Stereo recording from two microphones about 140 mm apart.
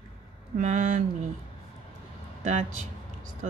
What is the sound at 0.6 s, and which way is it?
Speech, 65° right (ahead or behind).